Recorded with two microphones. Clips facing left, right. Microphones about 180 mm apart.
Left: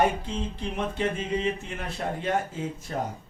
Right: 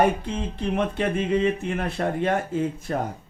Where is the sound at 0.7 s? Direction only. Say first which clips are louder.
Right 5 dB; 60° right (ahead or behind).